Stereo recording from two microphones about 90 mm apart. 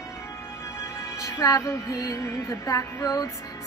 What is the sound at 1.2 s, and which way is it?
Music, 35° left (ahead or behind).